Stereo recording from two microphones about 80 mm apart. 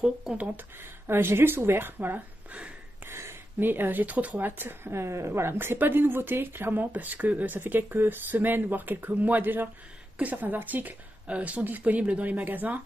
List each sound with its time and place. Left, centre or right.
0.0 s speech: centre
0.6 s speech: right
3.1 s speech: right